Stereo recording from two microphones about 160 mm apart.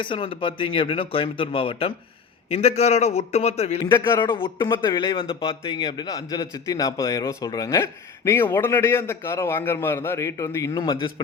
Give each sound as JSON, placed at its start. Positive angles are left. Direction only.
{"t": 0.0, "sound": "speech", "side_deg": 30}
{"t": 3.9, "sound": "a man's voice", "side_deg": 30}